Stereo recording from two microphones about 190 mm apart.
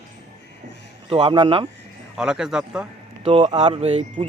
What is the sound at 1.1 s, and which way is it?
Speech, 25° right (ahead or behind).